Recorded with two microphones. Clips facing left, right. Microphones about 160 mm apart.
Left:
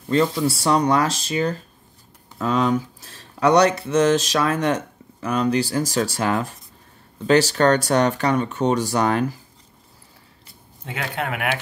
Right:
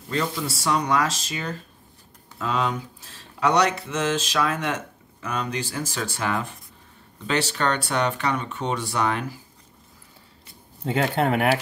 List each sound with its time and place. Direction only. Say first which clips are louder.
0.7 s speech: left 3 dB; 35° left (ahead or behind)
10.8 s speech: right 6 dB; 30° right (ahead or behind)